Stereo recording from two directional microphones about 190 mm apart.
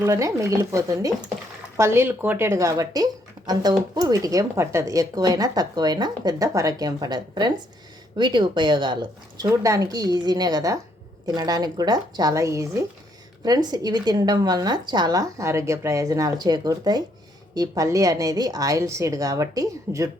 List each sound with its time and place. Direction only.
0.0 s a woman's voice: 15° right (ahead or behind)